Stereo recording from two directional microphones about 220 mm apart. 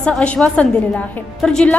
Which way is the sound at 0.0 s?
5° left (ahead or behind).